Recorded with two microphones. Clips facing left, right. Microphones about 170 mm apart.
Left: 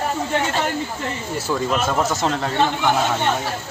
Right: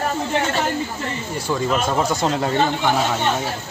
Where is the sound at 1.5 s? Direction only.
Centre (ahead or behind).